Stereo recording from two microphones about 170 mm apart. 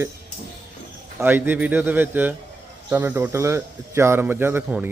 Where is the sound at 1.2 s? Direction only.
10° right (ahead or behind).